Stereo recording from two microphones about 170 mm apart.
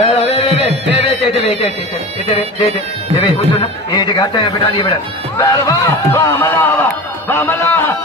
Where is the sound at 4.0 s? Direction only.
25° left (ahead or behind).